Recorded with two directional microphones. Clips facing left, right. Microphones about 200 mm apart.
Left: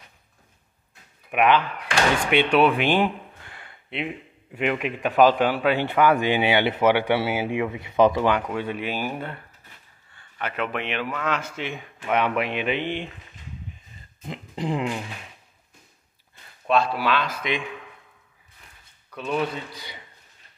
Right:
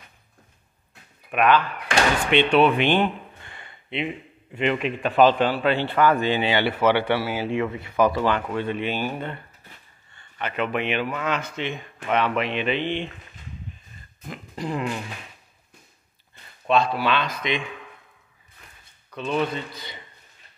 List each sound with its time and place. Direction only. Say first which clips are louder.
1.3 s a man's voice: even; 15° left (ahead or behind)
14.2 s a sound: left 2 dB; 20° left (ahead or behind)
16.6 s a man's voice: right 1 dB; 5° left (ahead or behind)
19.1 s speech: right 1 dB; 5° left (ahead or behind)